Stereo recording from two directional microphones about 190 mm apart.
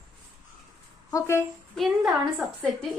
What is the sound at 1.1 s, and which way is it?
Speech, 15° left (ahead or behind).